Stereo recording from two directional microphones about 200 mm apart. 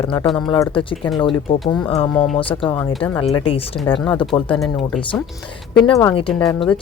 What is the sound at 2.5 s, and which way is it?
A woman's voice, 25° left (ahead or behind).